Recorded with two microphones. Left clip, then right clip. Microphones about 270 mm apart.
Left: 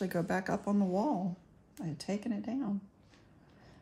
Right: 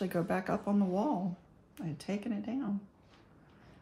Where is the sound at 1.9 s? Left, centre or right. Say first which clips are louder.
Left 1 dB; centre.